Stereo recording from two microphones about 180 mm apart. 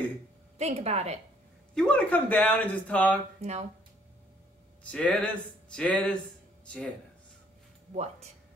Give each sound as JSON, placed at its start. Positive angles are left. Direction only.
{"t": 0.6, "sound": "speech", "side_deg": -35}
{"t": 1.8, "sound": "speech", "side_deg": 5}
{"t": 3.3, "sound": "speech", "side_deg": -35}
{"t": 4.9, "sound": "speech", "side_deg": 5}
{"t": 7.9, "sound": "speech", "side_deg": -40}